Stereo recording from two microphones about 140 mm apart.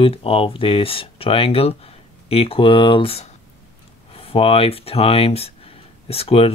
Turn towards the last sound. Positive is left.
turn(degrees=45)  # may be behind; listen again after turning